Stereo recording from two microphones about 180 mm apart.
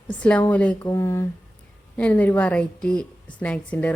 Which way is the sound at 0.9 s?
20° left (ahead or behind).